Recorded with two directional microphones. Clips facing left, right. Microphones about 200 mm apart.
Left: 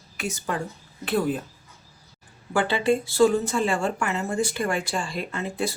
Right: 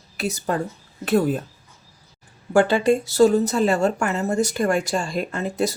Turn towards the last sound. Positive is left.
turn(degrees=-40)  # may be behind; listen again after turning